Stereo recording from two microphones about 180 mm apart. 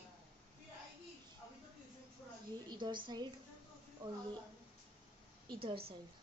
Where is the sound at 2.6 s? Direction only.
25° right (ahead or behind).